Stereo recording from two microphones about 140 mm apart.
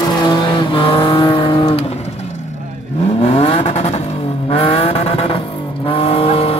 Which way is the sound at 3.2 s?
45° left (ahead or behind).